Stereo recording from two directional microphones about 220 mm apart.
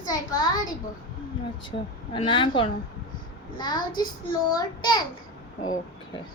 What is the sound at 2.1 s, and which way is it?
A child's voice, 25° left (ahead or behind).